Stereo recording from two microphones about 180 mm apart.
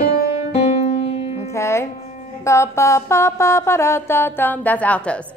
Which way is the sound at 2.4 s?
15° left (ahead or behind).